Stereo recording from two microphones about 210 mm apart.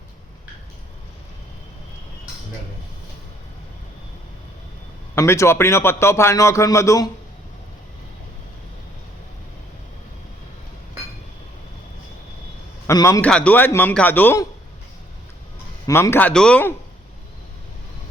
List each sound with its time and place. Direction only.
5.1 s a man's voice: 15° left (ahead or behind)
12.9 s a man's voice: 15° left (ahead or behind)
15.9 s a man's voice: 10° left (ahead or behind)